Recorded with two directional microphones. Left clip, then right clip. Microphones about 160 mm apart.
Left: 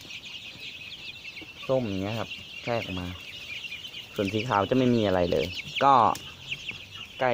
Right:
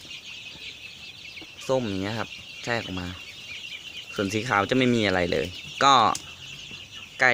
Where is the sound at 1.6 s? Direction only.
20° right (ahead or behind).